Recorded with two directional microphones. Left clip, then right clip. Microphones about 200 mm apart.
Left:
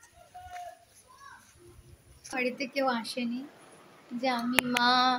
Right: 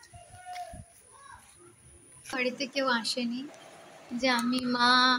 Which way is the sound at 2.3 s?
5° left (ahead or behind).